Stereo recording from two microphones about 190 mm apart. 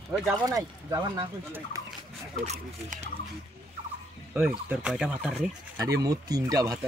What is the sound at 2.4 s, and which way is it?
Speech, 35° right (ahead or behind).